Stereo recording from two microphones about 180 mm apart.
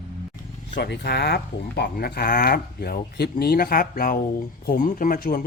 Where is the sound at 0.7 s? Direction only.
70° left (ahead or behind).